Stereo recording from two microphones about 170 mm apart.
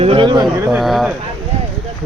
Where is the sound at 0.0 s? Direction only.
30° right (ahead or behind).